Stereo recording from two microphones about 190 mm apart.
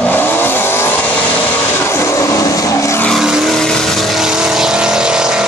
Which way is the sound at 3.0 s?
Centre (ahead or behind).